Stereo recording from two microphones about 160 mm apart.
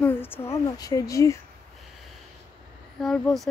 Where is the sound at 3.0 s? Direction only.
Centre (ahead or behind).